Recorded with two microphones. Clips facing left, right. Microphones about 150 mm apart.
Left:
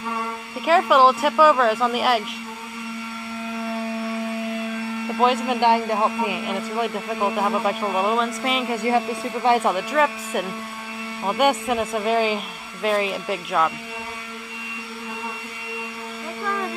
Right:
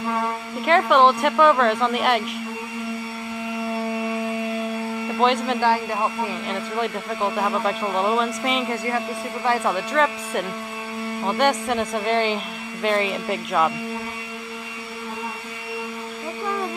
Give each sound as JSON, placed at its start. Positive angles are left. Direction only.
{"t": 0.7, "sound": "a woman's voice", "side_deg": 5}
{"t": 5.2, "sound": "a man's voice", "side_deg": 10}
{"t": 5.6, "sound": "a man's voice", "side_deg": 20}
{"t": 8.8, "sound": "speech", "side_deg": 20}
{"t": 9.7, "sound": "a man's voice", "side_deg": 5}